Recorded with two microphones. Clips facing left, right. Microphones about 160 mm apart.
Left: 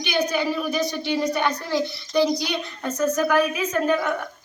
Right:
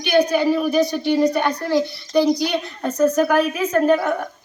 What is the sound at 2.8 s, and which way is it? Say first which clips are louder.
A woman's voice: right 5 dB; 30° right (ahead or behind).